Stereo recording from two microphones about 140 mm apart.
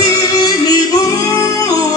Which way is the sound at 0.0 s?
30° left (ahead or behind).